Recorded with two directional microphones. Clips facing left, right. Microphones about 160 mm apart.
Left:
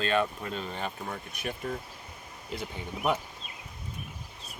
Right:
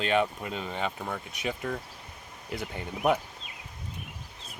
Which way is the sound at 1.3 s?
80° right.